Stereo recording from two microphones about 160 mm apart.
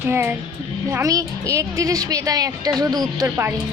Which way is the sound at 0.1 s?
15° right (ahead or behind).